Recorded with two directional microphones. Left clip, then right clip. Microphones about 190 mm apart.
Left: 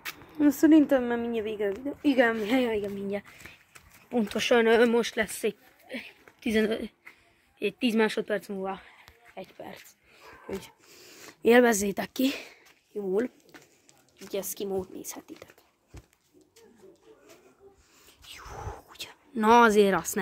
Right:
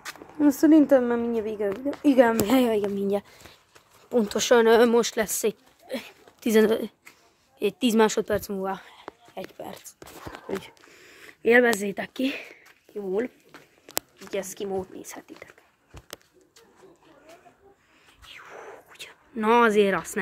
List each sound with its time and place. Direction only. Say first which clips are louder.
0.4 s a woman's voice: right 2 dB; 5° right (ahead or behind)
5.9 s a woman's voice: right 5 dB; 25° right (ahead or behind)
10.6 s speech: right 3 dB; 15° left (ahead or behind)
13.5 s a sound: right 3 dB; 10° right (ahead or behind)
14.3 s speech: right 2 dB; 20° left (ahead or behind)
18.4 s whispering: left 1 dB; 20° left (ahead or behind)
19.3 s speech: even; 30° left (ahead or behind)